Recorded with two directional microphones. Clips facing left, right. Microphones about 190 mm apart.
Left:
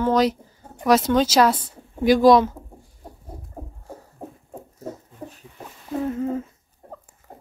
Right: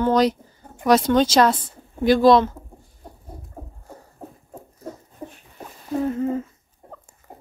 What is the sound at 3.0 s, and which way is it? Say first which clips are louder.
Bird: left 1 dB; 5° left (ahead or behind).